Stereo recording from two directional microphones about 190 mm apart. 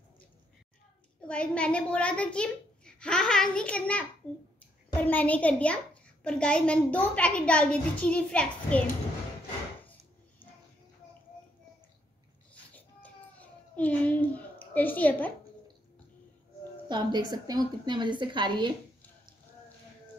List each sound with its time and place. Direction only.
1.2 s a child's voice: 5° left (ahead or behind)
12.7 s cat: 10° left (ahead or behind)
14.7 s a child's voice: 10° left (ahead or behind)
16.9 s a woman's voice: 20° right (ahead or behind)